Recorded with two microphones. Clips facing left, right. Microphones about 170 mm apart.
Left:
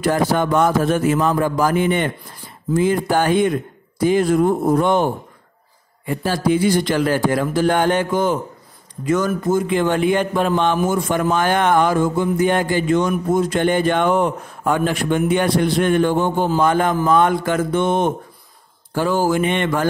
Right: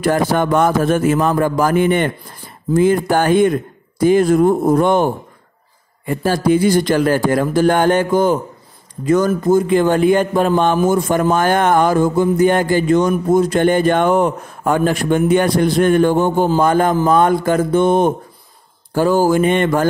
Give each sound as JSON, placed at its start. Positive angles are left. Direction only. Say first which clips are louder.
{"t": 0.0, "sound": "speech", "louder": "right 2 dB", "side_deg": -50}
{"t": 6.0, "sound": "a man's voice", "louder": "right 3 dB", "side_deg": -45}